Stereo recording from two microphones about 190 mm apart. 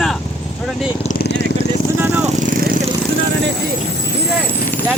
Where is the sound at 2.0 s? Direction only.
10° right (ahead or behind).